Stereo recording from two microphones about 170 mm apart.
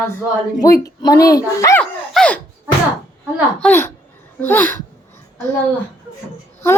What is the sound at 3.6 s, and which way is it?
A woman's voice, 10° left (ahead or behind).